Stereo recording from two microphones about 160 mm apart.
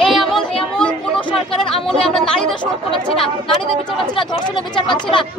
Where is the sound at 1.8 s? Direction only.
5° left (ahead or behind).